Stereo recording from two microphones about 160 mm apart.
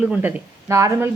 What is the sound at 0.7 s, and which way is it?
Speech, 20° right (ahead or behind).